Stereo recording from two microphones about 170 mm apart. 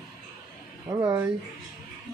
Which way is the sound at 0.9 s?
20° right (ahead or behind).